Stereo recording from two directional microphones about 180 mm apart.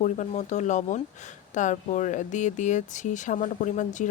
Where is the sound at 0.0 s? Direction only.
40° left (ahead or behind).